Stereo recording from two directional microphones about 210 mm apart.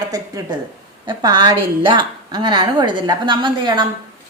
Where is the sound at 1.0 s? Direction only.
20° right (ahead or behind).